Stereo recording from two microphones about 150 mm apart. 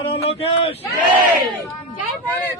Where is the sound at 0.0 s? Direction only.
40° left (ahead or behind).